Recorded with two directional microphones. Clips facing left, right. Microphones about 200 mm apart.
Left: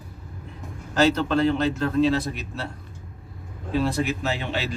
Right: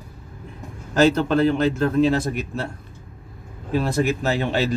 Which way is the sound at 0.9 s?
45° right (ahead or behind).